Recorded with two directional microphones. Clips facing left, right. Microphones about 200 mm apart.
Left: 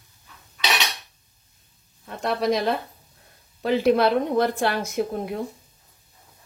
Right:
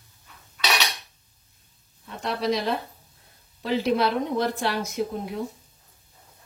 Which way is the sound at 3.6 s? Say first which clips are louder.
Left 4 dB; 55° left (ahead or behind).